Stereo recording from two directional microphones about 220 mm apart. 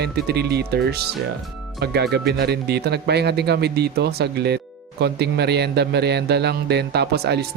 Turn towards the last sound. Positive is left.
turn(degrees=-45)  # may be behind; listen again after turning